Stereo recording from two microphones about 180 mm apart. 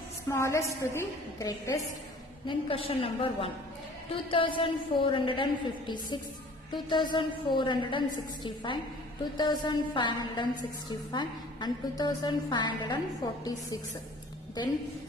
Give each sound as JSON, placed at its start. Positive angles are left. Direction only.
{"t": 0.3, "sound": "a woman's voice", "side_deg": 15}
{"t": 2.4, "sound": "a woman's voice", "side_deg": 30}
{"t": 9.4, "sound": "a woman's voice", "side_deg": 25}